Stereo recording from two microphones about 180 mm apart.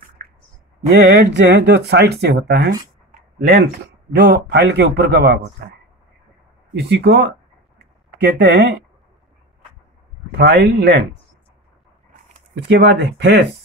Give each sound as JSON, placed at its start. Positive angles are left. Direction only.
{"t": 1.0, "sound": "speech", "side_deg": -65}
{"t": 3.1, "sound": "a sound", "side_deg": -60}
{"t": 4.1, "sound": "a man's voice", "side_deg": -65}
{"t": 6.8, "sound": "speech", "side_deg": -70}
{"t": 7.8, "sound": "a sound", "side_deg": -65}
{"t": 10.3, "sound": "speech", "side_deg": -65}
{"t": 12.5, "sound": "speech", "side_deg": -70}